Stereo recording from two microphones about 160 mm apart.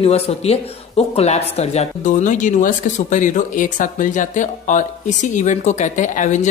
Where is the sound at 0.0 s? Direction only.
40° left (ahead or behind).